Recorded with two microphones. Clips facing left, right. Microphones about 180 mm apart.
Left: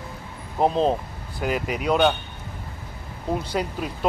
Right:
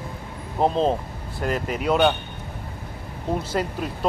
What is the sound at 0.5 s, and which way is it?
Speech, centre (ahead or behind).